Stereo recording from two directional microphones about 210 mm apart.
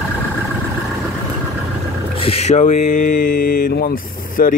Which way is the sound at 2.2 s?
30° left (ahead or behind).